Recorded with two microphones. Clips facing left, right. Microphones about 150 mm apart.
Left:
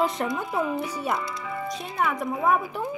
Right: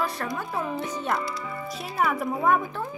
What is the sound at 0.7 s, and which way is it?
Speech, 5° left (ahead or behind).